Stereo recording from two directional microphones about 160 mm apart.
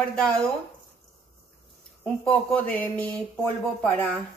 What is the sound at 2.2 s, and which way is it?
Speech, 5° left (ahead or behind).